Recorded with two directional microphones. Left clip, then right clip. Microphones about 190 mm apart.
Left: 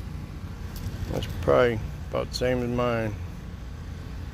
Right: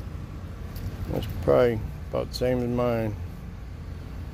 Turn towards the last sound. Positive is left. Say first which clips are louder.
# even
turn(degrees=-25)  # may be behind; listen again after turning